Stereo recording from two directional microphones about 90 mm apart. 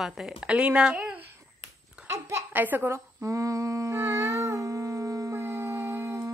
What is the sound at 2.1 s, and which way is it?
Speech, 25° right (ahead or behind).